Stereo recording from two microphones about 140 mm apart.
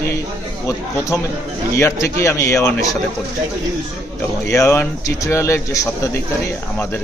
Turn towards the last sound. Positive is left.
turn(degrees=20)  # may be behind; listen again after turning